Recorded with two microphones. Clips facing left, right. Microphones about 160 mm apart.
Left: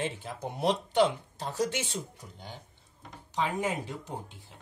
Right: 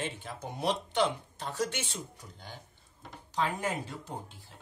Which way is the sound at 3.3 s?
15° left (ahead or behind).